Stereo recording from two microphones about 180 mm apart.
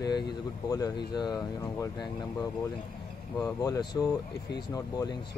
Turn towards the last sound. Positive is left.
turn(degrees=20)  # may be behind; listen again after turning